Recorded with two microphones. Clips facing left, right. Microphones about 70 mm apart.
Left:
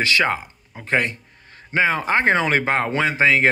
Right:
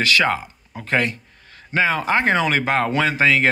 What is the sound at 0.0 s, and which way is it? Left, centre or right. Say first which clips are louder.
Speech: right 1 dB; left.